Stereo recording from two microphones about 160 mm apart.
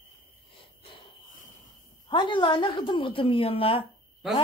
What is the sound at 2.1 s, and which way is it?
A woman's voice, 30° left (ahead or behind).